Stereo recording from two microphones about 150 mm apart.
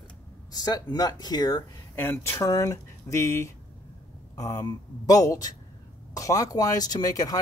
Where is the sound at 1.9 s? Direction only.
15° left (ahead or behind).